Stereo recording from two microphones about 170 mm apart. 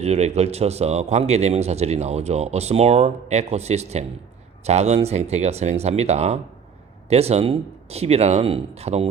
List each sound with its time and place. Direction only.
0.0 s a man's voice: 40° right (ahead or behind)